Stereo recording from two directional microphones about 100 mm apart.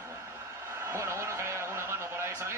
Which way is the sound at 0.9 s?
30° right (ahead or behind).